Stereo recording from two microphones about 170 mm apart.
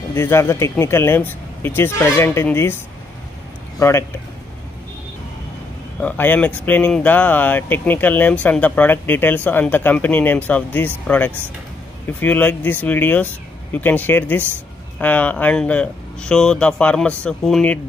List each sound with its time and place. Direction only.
0.1 s speech: 15° left (ahead or behind)
3.8 s speech: 20° left (ahead or behind)
5.9 s speech: 10° left (ahead or behind)